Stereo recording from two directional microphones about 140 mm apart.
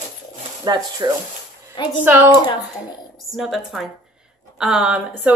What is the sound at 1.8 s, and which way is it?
Speech, 30° left (ahead or behind).